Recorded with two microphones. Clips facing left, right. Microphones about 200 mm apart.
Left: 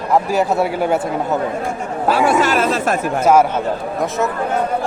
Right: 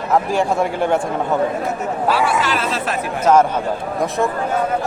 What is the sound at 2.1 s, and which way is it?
Speech, 45° left (ahead or behind).